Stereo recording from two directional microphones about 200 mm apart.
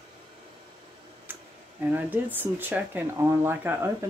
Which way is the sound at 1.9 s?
10° right (ahead or behind).